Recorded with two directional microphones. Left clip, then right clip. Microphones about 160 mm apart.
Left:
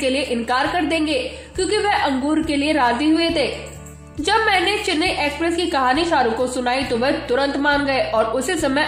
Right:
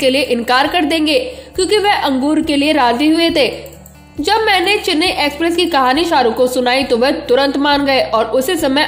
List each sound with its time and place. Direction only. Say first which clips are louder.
0.0 s a woman's voice: right 7 dB; 40° right (ahead or behind)